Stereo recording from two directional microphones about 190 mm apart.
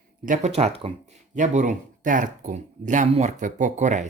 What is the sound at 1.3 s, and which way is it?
Speech, 40° right (ahead or behind).